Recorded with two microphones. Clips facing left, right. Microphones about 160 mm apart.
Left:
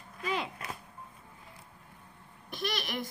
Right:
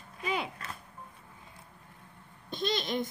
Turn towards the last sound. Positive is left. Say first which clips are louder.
# right 4 dB
turn(degrees=-20)  # may be behind; listen again after turning